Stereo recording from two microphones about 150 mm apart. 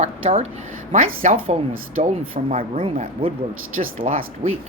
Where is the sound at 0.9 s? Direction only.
60° right (ahead or behind).